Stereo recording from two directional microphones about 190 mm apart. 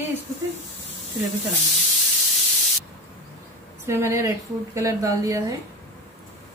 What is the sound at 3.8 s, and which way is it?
A woman's voice, 15° right (ahead or behind).